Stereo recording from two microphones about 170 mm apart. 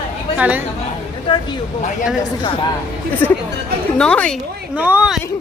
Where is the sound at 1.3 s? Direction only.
30° left (ahead or behind).